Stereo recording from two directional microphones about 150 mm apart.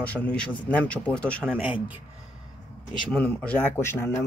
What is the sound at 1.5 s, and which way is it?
Speech, 10° right (ahead or behind).